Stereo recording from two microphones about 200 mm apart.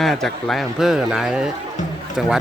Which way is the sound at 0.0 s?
Centre (ahead or behind).